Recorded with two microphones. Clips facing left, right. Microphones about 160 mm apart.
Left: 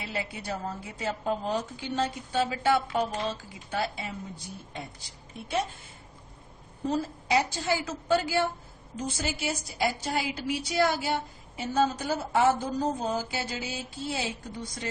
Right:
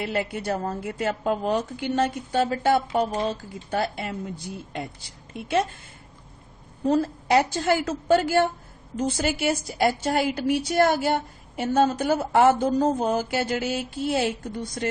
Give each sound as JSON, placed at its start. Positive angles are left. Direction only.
{"t": 0.0, "sound": "a woman's voice", "side_deg": -60}
{"t": 5.3, "sound": "a woman's voice", "side_deg": -80}
{"t": 6.8, "sound": "a woman's voice", "side_deg": -60}